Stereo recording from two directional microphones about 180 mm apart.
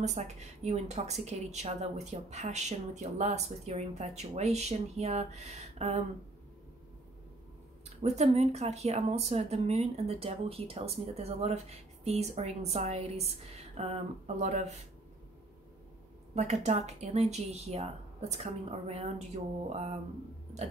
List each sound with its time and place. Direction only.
0.0 s speech: 40° right (ahead or behind)
8.0 s speech: 35° right (ahead or behind)
16.3 s speech: 40° right (ahead or behind)